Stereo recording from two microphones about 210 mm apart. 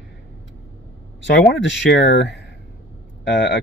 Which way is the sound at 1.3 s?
55° left (ahead or behind).